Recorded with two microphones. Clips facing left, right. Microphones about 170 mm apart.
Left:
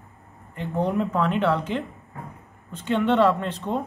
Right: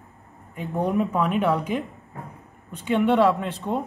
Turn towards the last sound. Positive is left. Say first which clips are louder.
# even
turn(degrees=-10)  # may be behind; listen again after turning